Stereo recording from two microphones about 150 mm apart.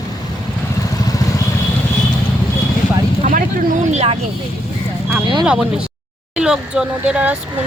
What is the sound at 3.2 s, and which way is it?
Speech, 55° right (ahead or behind).